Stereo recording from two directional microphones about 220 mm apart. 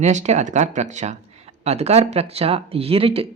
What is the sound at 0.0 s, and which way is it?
Speech, 30° right (ahead or behind).